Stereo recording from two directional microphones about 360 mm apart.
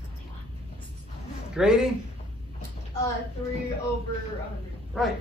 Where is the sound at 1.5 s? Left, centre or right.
Centre.